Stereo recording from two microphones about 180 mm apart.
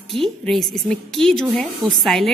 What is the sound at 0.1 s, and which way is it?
A woman's voice, centre (ahead or behind).